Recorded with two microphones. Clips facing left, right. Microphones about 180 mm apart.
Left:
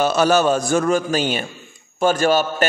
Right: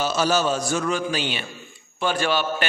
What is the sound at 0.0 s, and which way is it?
A man's voice, 60° left (ahead or behind).